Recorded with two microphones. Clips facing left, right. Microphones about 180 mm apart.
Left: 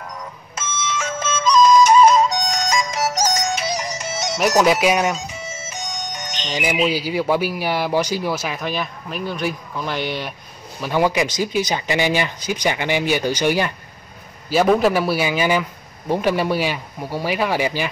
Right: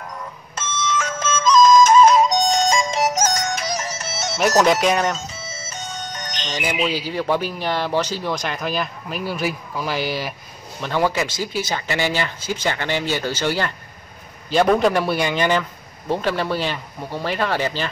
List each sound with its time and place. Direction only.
0.6 s music: 10° left (ahead or behind)
2.2 s music: 25° right (ahead or behind)
3.7 s music: 15° left (ahead or behind)
4.5 s speech: 10° left (ahead or behind)
10.8 s a man's voice: 15° left (ahead or behind)